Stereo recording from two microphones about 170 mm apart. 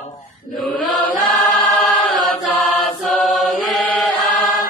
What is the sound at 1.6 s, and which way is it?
Chant, 10° left (ahead or behind).